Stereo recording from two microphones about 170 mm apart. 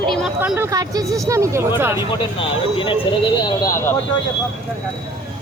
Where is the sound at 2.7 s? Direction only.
30° left (ahead or behind).